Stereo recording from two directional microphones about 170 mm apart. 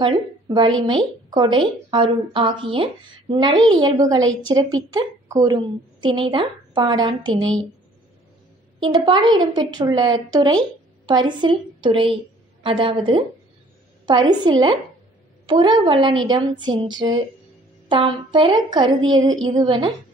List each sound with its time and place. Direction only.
0.0 s a woman's voice: 25° right (ahead or behind)
8.7 s a woman's voice: 25° right (ahead or behind)